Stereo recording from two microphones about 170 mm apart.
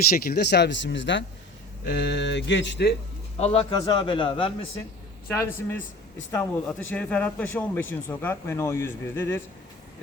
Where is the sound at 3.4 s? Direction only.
35° left (ahead or behind).